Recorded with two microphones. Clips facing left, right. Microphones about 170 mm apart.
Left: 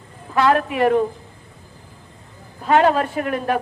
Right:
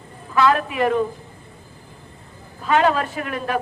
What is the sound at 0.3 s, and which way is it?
Speech, 55° left (ahead or behind).